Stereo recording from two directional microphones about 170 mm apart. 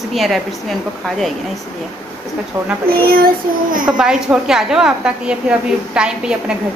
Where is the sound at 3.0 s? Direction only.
55° right (ahead or behind).